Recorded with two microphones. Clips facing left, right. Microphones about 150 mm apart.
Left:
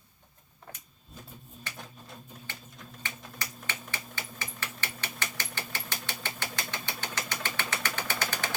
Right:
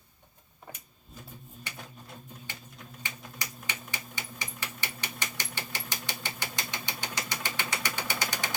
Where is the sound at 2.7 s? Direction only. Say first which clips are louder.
Left 1 dB; 10° right (ahead or behind).